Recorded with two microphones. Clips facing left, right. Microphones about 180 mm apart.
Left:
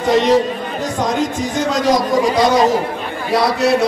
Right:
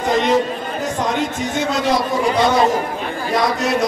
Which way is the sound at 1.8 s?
40° left (ahead or behind).